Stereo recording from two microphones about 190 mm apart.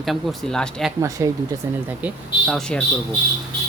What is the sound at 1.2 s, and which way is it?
Speech, 15° right (ahead or behind).